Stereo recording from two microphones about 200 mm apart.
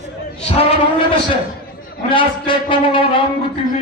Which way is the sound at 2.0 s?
25° left (ahead or behind).